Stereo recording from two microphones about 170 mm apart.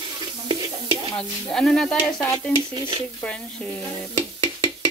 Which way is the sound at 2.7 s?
25° right (ahead or behind).